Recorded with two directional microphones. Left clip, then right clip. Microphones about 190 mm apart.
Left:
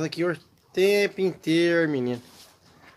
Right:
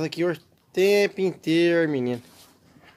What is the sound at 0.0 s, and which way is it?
Speech, 20° right (ahead or behind).